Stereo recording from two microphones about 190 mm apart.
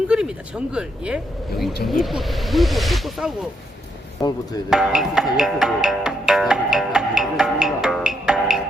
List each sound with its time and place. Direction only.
0.1 s a woman's voice: 5° right (ahead or behind)
4.2 s speech: 20° left (ahead or behind)
4.7 s music: centre (ahead or behind)